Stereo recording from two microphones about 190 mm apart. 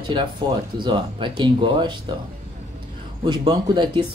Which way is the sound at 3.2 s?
25° right (ahead or behind).